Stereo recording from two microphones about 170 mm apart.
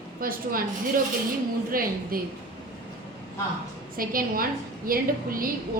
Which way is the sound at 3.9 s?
55° right (ahead or behind).